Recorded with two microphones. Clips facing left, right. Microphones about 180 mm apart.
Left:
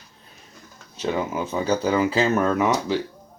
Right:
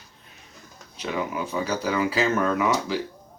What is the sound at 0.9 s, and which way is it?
Speech, 25° left (ahead or behind).